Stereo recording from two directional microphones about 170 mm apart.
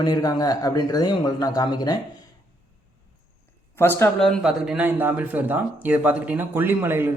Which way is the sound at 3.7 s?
15° left (ahead or behind).